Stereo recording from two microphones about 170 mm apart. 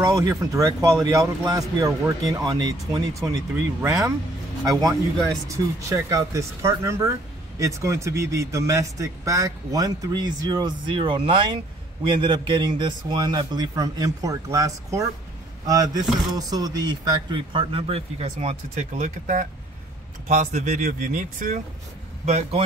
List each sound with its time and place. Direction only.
0.0 s a man's voice: 20° right (ahead or behind); by 21.5 s 50° right (ahead or behind)
22.2 s speech: 40° right (ahead or behind)